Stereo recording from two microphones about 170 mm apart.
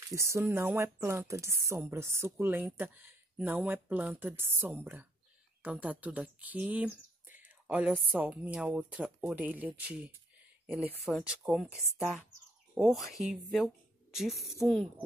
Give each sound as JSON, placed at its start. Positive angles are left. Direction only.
{"t": 0.1, "sound": "a woman's voice", "side_deg": -15}